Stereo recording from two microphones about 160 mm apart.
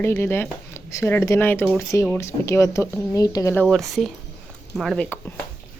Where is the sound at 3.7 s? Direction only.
Centre (ahead or behind).